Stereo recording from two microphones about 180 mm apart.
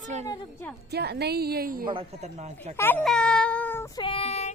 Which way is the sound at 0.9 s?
65° right (ahead or behind).